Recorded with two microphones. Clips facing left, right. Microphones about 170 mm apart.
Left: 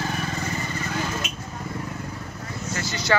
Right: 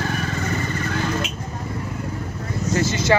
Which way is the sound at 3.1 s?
25° right (ahead or behind).